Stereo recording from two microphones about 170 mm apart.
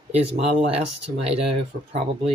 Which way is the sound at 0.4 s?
35° right (ahead or behind).